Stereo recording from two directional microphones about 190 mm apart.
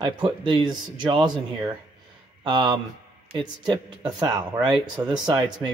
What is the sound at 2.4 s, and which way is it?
Speech, 25° right (ahead or behind).